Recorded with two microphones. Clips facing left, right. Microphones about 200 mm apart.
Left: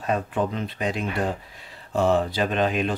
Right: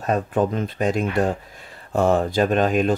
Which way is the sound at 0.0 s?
45° right (ahead or behind).